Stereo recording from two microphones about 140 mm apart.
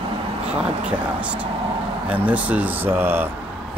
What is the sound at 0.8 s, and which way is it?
Speech, 10° right (ahead or behind).